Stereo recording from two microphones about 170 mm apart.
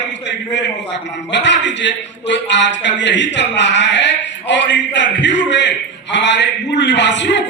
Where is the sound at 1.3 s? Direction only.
90° left.